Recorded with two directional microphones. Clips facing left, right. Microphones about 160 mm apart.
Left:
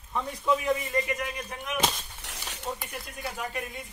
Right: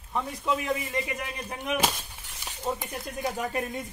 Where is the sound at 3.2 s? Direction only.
40° right (ahead or behind).